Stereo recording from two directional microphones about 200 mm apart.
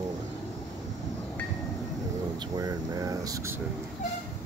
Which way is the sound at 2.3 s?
20° right (ahead or behind).